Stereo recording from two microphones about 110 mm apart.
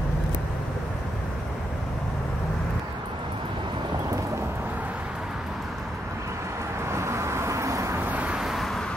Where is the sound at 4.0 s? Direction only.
25° right (ahead or behind).